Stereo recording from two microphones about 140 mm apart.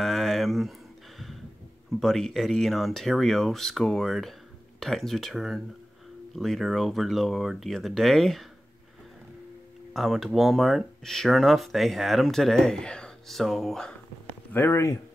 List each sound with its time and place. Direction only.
0.0 s a sound: centre (ahead or behind)
2.0 s speech: 5° left (ahead or behind)
9.9 s speech: centre (ahead or behind)
14.5 s speech: 15° left (ahead or behind)